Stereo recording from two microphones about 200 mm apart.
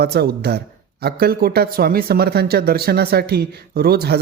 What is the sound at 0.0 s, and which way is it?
Speech, 50° right (ahead or behind).